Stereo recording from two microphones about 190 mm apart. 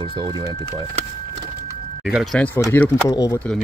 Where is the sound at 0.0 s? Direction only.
25° right (ahead or behind).